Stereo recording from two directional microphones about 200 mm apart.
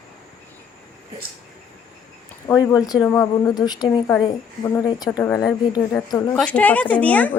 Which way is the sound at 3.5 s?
20° left (ahead or behind).